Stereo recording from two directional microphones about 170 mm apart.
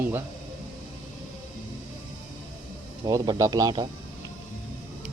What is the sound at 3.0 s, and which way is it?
Speech, 25° right (ahead or behind).